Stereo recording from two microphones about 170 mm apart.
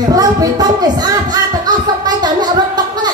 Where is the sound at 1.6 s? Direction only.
25° right (ahead or behind).